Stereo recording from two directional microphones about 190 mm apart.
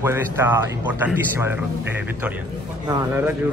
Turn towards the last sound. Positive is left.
turn(degrees=-20)  # may be behind; listen again after turning